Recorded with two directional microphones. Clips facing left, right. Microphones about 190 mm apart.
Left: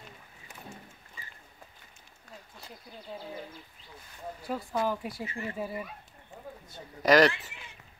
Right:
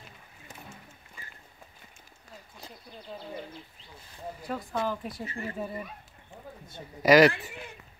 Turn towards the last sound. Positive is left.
turn(degrees=-5)  # may be behind; listen again after turning